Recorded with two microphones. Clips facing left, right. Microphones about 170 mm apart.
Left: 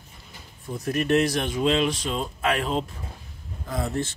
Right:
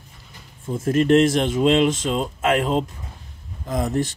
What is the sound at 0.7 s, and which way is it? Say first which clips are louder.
Speech: right 6 dB; 25° right (ahead or behind).